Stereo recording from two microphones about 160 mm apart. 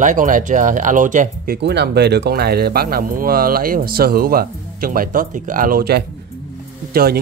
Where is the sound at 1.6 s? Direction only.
90° right; by 7.1 s 70° right (ahead or behind).